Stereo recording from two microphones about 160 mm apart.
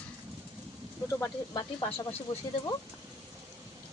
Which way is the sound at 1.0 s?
20° left (ahead or behind).